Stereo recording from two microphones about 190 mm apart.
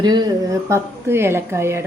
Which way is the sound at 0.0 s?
20° right (ahead or behind).